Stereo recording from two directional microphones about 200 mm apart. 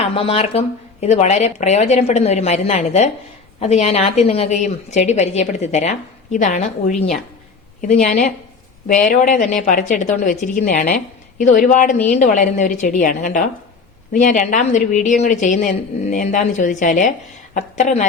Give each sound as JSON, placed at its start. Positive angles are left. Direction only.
{"t": 0.0, "sound": "a woman's voice", "side_deg": 30}